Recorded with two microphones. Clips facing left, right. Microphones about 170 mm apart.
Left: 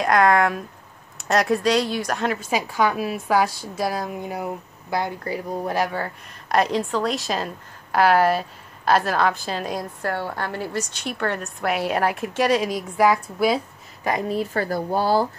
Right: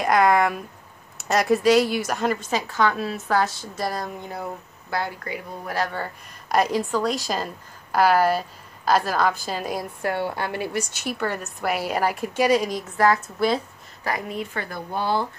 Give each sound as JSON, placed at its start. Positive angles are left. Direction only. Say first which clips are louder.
{"t": 0.0, "sound": "a woman's voice", "louder": "left 1 dB", "side_deg": 0}
{"t": 2.5, "sound": "a woman's voice", "louder": "left 1 dB", "side_deg": 10}
{"t": 5.2, "sound": "speech", "louder": "left 6 dB", "side_deg": 35}
{"t": 5.9, "sound": "a woman's voice", "louder": "left 3 dB", "side_deg": 0}
{"t": 14.3, "sound": "speech", "louder": "left 7 dB", "side_deg": 35}